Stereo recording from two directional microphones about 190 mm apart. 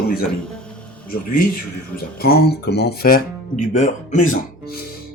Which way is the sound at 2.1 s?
55° left (ahead or behind).